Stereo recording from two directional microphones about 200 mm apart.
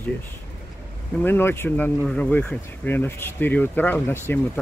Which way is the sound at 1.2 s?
10° left (ahead or behind).